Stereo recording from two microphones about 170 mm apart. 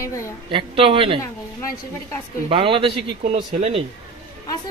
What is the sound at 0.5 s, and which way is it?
Speech, 30° right (ahead or behind).